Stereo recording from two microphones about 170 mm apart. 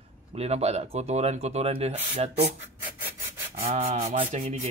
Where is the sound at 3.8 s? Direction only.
35° right (ahead or behind).